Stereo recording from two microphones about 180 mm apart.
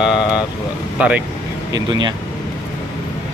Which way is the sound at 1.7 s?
25° right (ahead or behind).